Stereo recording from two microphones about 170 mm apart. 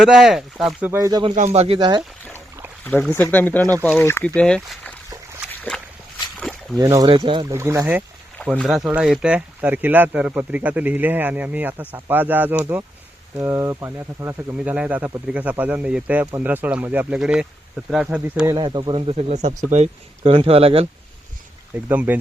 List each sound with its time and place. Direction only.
0.0 s speech: centre (ahead or behind)
0.9 s speech: 20° right (ahead or behind)
1.5 s speech: 35° right (ahead or behind)
2.8 s speech: 10° left (ahead or behind)
6.7 s speech: 20° right (ahead or behind)
7.5 s speech: 15° right (ahead or behind)
8.5 s speech: centre (ahead or behind)
18.5 s speech: 25° right (ahead or behind)
21.8 s speech: 10° right (ahead or behind)